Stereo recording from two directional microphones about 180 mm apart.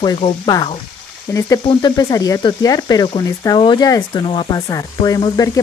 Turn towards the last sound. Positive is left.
turn(degrees=20)  # may be behind; listen again after turning